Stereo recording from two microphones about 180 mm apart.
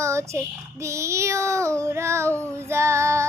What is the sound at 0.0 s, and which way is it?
Child singing, 15° right (ahead or behind).